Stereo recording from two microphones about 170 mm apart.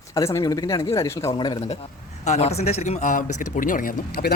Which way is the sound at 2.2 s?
40° left (ahead or behind).